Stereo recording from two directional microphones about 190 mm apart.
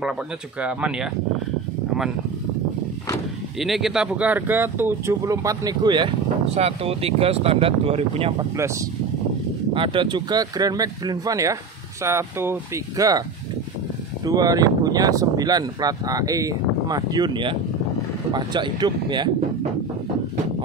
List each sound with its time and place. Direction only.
0.6 s speech: 5° right (ahead or behind)
3.5 s speech: centre (ahead or behind); by 8.5 s 30° right (ahead or behind)
9.8 s speech: 25° right (ahead or behind)
14.2 s speech: 20° right (ahead or behind)